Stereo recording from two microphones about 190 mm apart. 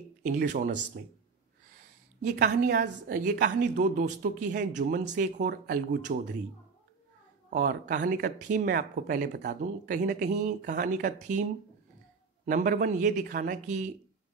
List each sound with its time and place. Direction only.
0.2 s speech: 45° right (ahead or behind)
2.2 s speech: 45° right (ahead or behind)
7.5 s speech: 45° right (ahead or behind)
12.4 s speech: 45° right (ahead or behind)